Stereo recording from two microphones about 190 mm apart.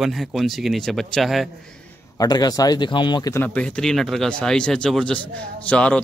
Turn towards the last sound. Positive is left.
turn(degrees=5)  # may be behind; listen again after turning